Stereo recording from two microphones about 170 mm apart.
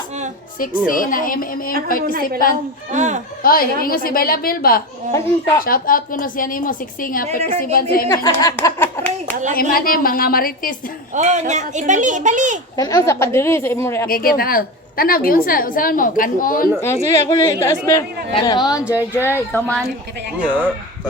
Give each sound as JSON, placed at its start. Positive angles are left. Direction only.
{"t": 0.9, "sound": "a woman's voice", "side_deg": 55}
{"t": 2.9, "sound": "speech", "side_deg": -45}
{"t": 3.4, "sound": "a woman's voice", "side_deg": 60}
{"t": 8.1, "sound": "speech", "side_deg": 20}
{"t": 9.6, "sound": "a woman's voice", "side_deg": 60}
{"t": 11.1, "sound": "speech", "side_deg": -45}
{"t": 12.7, "sound": "speech", "side_deg": 20}
{"t": 14.1, "sound": "a woman's voice", "side_deg": 60}
{"t": 16.8, "sound": "speech", "side_deg": 15}
{"t": 18.9, "sound": "speech", "side_deg": -10}
{"t": 19.2, "sound": "speech", "side_deg": 10}
{"t": 20.4, "sound": "speech", "side_deg": -10}